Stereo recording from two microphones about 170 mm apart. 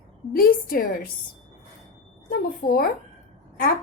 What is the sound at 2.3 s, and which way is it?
Speech, 60° left (ahead or behind).